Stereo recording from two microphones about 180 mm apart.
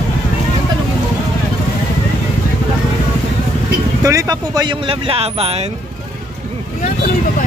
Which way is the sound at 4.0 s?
20° right (ahead or behind).